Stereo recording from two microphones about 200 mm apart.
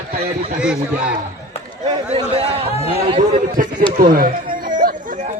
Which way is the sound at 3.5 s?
45° right (ahead or behind).